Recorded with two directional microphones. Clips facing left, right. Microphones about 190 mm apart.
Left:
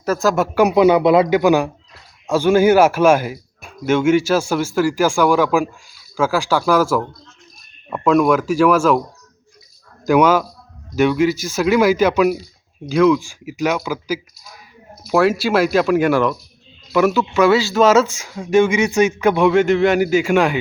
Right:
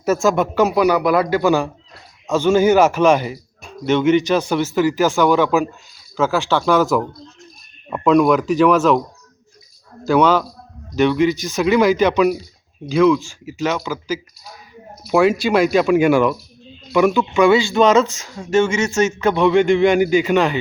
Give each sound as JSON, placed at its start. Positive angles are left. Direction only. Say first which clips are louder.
{"t": 0.0, "sound": "speech", "louder": "right 1 dB", "side_deg": -5}
{"t": 10.1, "sound": "speech", "louder": "left 1 dB", "side_deg": 10}